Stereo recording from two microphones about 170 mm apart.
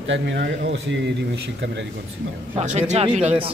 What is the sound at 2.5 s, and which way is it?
Speech, 40° right (ahead or behind).